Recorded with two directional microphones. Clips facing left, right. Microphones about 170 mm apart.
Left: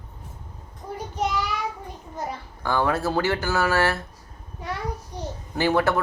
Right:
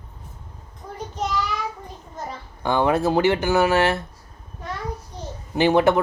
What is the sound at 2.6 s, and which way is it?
Speech, 20° right (ahead or behind).